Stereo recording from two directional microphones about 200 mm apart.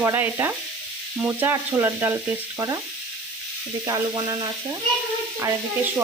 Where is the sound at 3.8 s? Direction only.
20° right (ahead or behind).